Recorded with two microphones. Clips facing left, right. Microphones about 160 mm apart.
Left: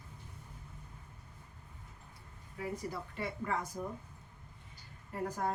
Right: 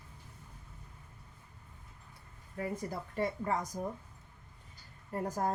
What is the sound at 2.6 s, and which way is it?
Speech, 45° right (ahead or behind).